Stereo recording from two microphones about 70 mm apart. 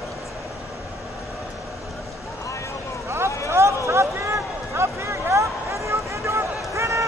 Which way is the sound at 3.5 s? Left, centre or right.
Right.